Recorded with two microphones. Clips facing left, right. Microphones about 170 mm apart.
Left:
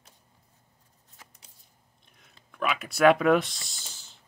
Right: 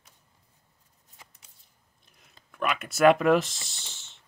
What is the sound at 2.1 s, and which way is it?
Speech, centre (ahead or behind).